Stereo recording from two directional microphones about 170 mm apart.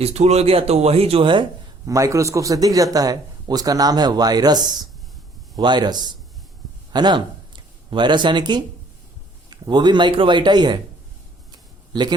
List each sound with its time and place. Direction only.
0.0 s speech: 40° right (ahead or behind)
1.9 s a man's voice: 20° right (ahead or behind)
11.5 s a sound: 25° right (ahead or behind)